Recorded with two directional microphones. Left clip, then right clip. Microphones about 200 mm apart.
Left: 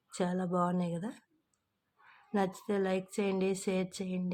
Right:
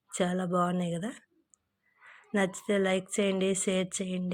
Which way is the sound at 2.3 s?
10° right (ahead or behind).